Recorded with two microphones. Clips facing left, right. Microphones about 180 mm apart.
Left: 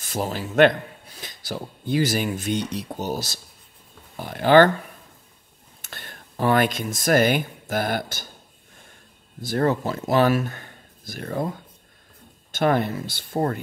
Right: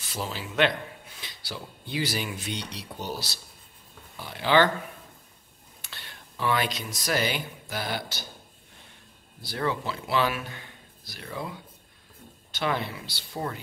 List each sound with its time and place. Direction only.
0.0 s a man's voice: 45° left (ahead or behind)
5.8 s speech: 45° left (ahead or behind)
9.4 s speech: 45° left (ahead or behind)